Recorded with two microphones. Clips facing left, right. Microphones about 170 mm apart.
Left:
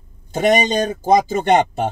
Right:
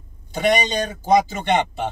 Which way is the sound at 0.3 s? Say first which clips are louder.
Left 4 dB; 45° left (ahead or behind).